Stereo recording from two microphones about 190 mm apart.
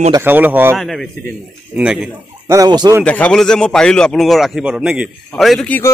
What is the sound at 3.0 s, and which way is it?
A man's voice, 5° left (ahead or behind).